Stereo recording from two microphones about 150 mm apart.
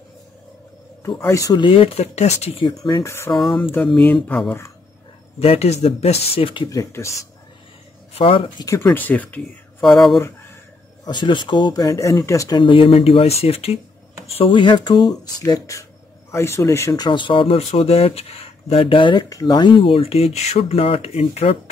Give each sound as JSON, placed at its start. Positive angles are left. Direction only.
{"t": 1.2, "sound": "speech", "side_deg": 20}
{"t": 2.7, "sound": "speech", "side_deg": 25}
{"t": 3.7, "sound": "speech", "side_deg": 5}
{"t": 5.4, "sound": "speech", "side_deg": 40}
{"t": 6.7, "sound": "speech", "side_deg": 20}
{"t": 8.1, "sound": "speech", "side_deg": 40}
{"t": 8.6, "sound": "speech", "side_deg": 20}
{"t": 11.1, "sound": "speech", "side_deg": 30}